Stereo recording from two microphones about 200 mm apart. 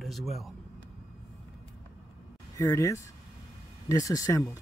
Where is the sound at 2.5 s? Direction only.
15° left (ahead or behind).